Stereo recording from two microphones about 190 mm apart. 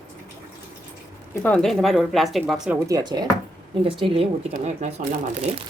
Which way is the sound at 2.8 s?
20° right (ahead or behind).